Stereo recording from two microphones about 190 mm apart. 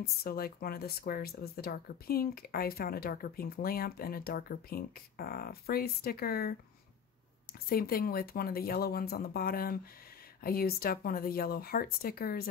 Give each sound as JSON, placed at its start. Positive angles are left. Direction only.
{"t": 0.0, "sound": "speech", "side_deg": 50}
{"t": 7.6, "sound": "speech", "side_deg": 50}